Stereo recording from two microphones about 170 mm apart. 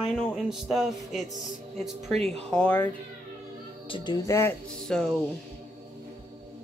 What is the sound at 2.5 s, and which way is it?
Speech, 10° left (ahead or behind).